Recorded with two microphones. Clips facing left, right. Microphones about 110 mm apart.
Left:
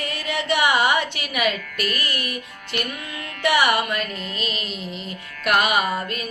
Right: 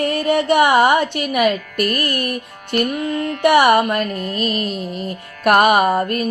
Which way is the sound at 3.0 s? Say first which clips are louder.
Right 14 dB; 40° right (ahead or behind).